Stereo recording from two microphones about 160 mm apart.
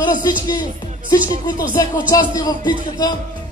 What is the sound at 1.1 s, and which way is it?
Music, 20° left (ahead or behind).